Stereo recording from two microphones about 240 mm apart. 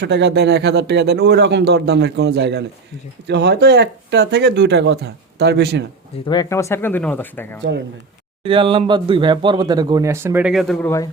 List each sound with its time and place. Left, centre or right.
0.0 s speech: right
6.2 s speech: centre
8.4 s speech: right; by 11.1 s centre